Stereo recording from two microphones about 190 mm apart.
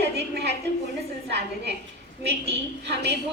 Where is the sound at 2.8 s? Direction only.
60° right (ahead or behind).